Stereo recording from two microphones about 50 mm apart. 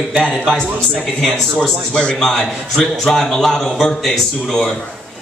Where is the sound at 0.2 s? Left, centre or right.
Centre.